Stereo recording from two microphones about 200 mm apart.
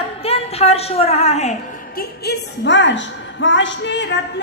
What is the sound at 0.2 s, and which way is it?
A woman's voice, 30° left (ahead or behind).